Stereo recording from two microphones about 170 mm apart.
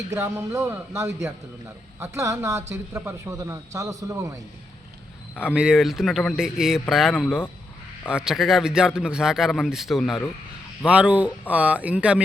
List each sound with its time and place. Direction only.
0.1 s a man's voice: 15° right (ahead or behind)
5.4 s a man's voice: 5° right (ahead or behind)